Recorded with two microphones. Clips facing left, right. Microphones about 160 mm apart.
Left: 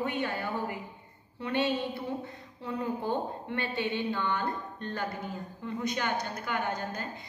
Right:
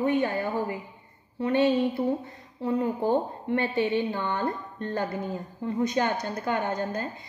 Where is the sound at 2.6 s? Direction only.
35° right (ahead or behind).